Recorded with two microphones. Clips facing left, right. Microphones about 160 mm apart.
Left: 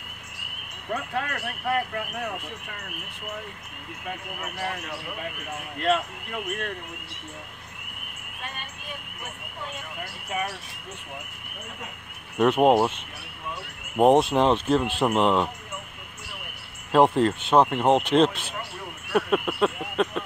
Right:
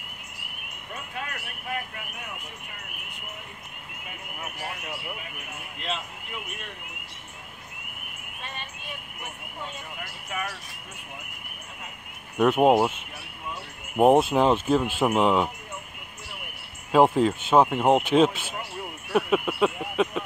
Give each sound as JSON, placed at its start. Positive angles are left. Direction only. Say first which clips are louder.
{"t": 0.9, "sound": "speech", "louder": "left 7 dB", "side_deg": 65}
{"t": 5.8, "sound": "speech", "louder": "left 10 dB", "side_deg": 55}
{"t": 12.4, "sound": "speech", "louder": "even", "side_deg": -5}
{"t": 16.9, "sound": "speech", "louder": "even", "side_deg": -5}
{"t": 19.1, "sound": "a sound", "louder": "even", "side_deg": -5}